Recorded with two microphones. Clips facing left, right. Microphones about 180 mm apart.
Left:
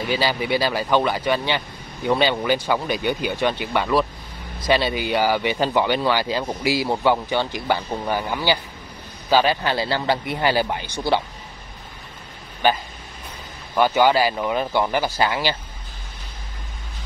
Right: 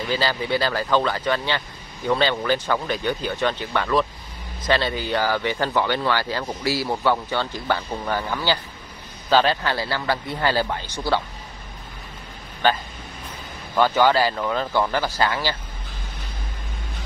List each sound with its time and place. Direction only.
0.1 s speech: 15° left (ahead or behind)
12.6 s speech: 15° left (ahead or behind)